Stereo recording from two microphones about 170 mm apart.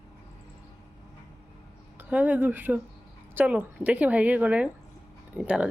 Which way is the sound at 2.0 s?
10° right (ahead or behind).